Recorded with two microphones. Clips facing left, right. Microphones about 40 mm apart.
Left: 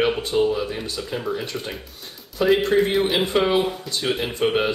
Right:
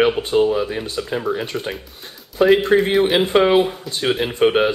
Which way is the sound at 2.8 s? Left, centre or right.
Centre.